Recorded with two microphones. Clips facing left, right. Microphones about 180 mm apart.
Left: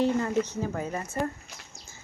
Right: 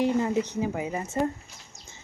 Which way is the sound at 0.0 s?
15° right (ahead or behind).